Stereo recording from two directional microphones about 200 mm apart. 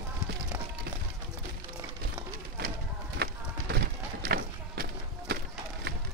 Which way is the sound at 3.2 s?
55° right (ahead or behind).